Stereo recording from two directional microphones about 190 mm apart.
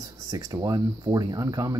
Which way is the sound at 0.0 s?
20° right (ahead or behind).